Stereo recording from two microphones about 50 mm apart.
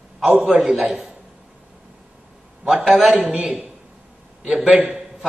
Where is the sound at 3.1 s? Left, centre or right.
Right.